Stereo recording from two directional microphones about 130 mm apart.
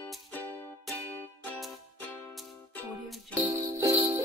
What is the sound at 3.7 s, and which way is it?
Music, 25° right (ahead or behind).